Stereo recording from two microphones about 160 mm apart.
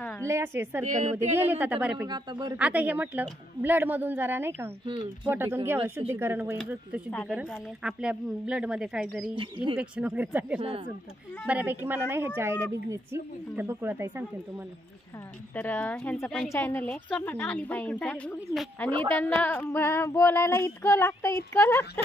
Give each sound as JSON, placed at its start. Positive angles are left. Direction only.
{"t": 0.2, "sound": "a woman's voice", "side_deg": -15}
{"t": 0.8, "sound": "a sound", "side_deg": -50}
{"t": 1.3, "sound": "a woman's voice", "side_deg": -10}
{"t": 2.0, "sound": "speech", "side_deg": -25}
{"t": 2.5, "sound": "a woman's voice", "side_deg": -10}
{"t": 15.5, "sound": "speech", "side_deg": 10}
{"t": 18.9, "sound": "speech", "side_deg": -35}
{"t": 19.1, "sound": "speech", "side_deg": 10}